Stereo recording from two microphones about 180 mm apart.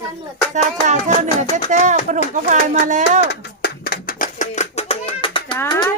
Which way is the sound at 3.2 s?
60° left (ahead or behind).